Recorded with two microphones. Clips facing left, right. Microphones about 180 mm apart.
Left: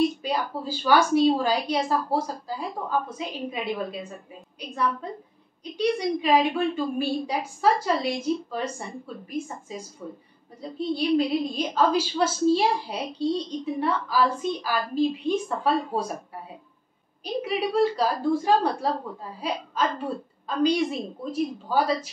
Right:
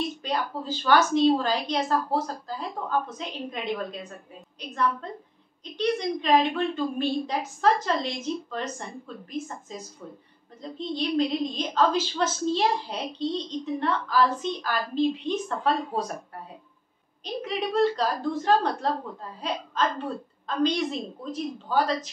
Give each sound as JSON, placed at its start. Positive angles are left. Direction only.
{"t": 0.2, "sound": "a woman's voice", "side_deg": 10}
{"t": 17.2, "sound": "a woman's voice", "side_deg": 10}